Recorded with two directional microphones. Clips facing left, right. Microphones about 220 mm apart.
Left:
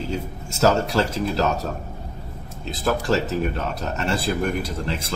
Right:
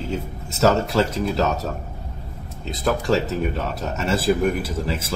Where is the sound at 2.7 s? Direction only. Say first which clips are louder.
Right 1 dB; centre (ahead or behind).